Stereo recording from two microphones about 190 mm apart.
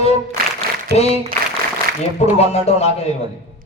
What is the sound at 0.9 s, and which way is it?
Speech, 35° left (ahead or behind).